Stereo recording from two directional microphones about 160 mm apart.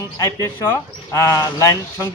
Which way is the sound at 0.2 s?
15° left (ahead or behind).